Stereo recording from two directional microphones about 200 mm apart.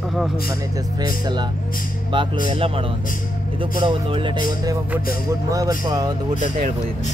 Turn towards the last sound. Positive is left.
turn(degrees=-20)  # may be behind; listen again after turning